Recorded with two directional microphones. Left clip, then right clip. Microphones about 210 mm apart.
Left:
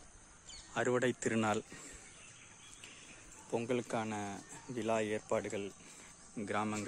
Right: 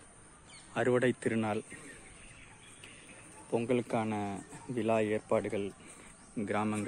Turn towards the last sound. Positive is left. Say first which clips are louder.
# right 4 dB
turn(degrees=0)  # may be behind; listen again after turning